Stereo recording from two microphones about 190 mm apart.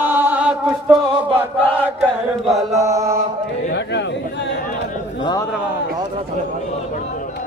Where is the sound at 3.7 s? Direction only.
65° left (ahead or behind).